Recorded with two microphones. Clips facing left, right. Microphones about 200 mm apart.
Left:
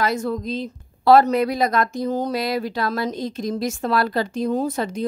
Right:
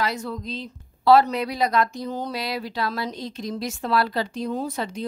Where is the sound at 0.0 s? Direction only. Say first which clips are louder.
Left 5 dB; 50° left (ahead or behind).